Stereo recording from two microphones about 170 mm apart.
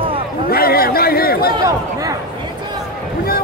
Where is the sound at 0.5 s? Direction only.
60° left (ahead or behind).